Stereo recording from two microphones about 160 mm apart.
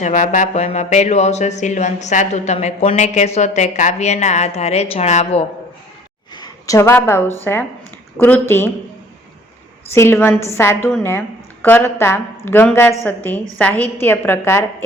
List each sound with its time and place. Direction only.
0.0 s speech: 50° left (ahead or behind)
6.3 s a sound: 25° left (ahead or behind)
7.5 s a woman's voice: 15° left (ahead or behind)
9.9 s a woman's voice: 15° left (ahead or behind)